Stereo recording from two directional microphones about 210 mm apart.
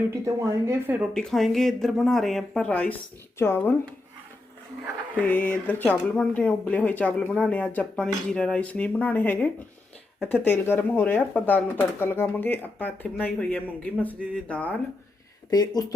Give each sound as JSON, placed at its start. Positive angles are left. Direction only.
{"t": 0.7, "sound": "speech", "side_deg": -10}
{"t": 1.1, "sound": "speech", "side_deg": 0}
{"t": 5.1, "sound": "speech", "side_deg": 10}
{"t": 15.4, "sound": "speech", "side_deg": 20}